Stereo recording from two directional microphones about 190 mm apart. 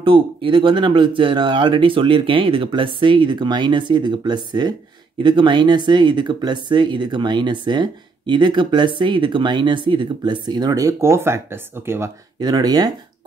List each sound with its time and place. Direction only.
0.0 s speech: 25° right (ahead or behind)